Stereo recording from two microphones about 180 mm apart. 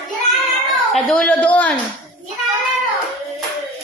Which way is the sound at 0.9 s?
5° left (ahead or behind).